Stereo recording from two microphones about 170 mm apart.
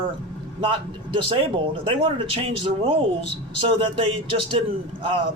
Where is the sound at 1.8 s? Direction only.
30° right (ahead or behind).